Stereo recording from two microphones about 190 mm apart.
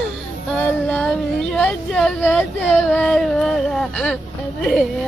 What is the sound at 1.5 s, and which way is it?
Speech, 5° left (ahead or behind).